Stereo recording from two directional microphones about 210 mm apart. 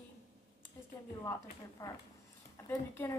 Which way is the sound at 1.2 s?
15° left (ahead or behind).